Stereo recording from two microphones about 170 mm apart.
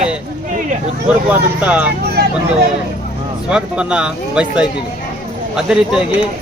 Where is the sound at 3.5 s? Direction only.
5° right (ahead or behind).